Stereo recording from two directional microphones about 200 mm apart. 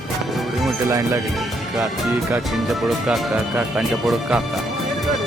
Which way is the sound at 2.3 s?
Centre (ahead or behind).